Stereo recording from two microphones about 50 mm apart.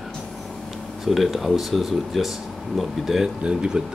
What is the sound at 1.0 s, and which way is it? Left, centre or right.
Speech, centre.